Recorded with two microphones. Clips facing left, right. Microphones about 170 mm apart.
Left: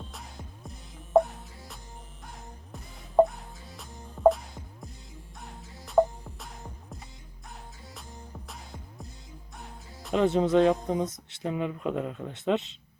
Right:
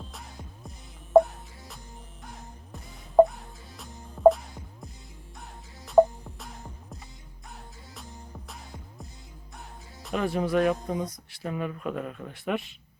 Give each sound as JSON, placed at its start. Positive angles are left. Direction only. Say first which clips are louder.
{"t": 0.0, "sound": "music", "louder": "even", "side_deg": 0}
{"t": 4.2, "sound": "music", "louder": "right 3 dB", "side_deg": 0}
{"t": 5.8, "sound": "music", "louder": "right 4 dB", "side_deg": 0}
{"t": 10.1, "sound": "speech", "louder": "left 4 dB", "side_deg": 20}